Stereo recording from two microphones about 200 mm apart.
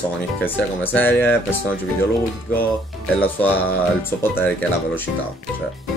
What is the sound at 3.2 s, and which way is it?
Speech, 10° left (ahead or behind).